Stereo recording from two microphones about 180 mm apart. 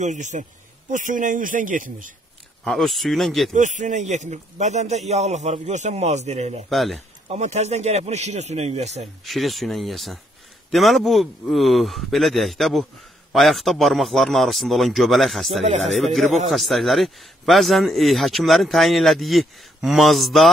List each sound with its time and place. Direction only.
0.0 s a man's voice: 45° right (ahead or behind)
2.6 s a man's voice: centre (ahead or behind)
3.5 s speech: 45° right (ahead or behind)
6.7 s a man's voice: centre (ahead or behind)
7.2 s speech: 40° right (ahead or behind)
9.2 s a man's voice: centre (ahead or behind)